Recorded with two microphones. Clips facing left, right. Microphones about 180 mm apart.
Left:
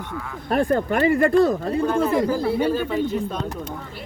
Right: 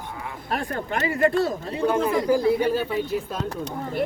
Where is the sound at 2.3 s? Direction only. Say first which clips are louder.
Right 1 dB; 10° right (ahead or behind).